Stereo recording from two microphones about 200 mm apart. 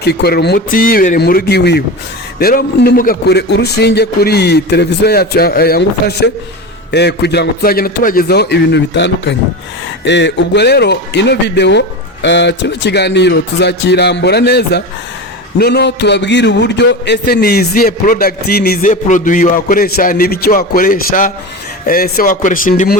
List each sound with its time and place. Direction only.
0.0 s a man's voice: 55° left (ahead or behind)